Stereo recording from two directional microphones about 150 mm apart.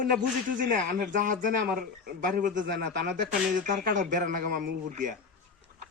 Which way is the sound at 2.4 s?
80° right.